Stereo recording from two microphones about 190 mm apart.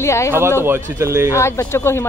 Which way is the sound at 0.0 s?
15° left (ahead or behind).